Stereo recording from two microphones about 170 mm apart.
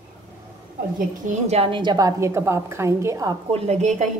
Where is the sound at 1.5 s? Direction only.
35° right (ahead or behind).